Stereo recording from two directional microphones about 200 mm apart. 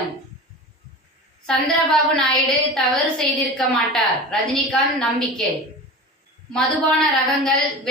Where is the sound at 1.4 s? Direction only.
5° left (ahead or behind).